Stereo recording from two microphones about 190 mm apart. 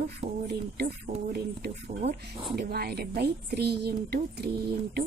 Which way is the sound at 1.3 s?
55° right (ahead or behind).